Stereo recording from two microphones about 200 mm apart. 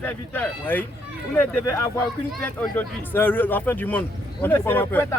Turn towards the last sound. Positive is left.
turn(degrees=10)  # may be behind; listen again after turning